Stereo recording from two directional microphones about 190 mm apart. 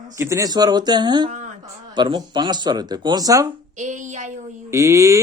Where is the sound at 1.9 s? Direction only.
25° right (ahead or behind).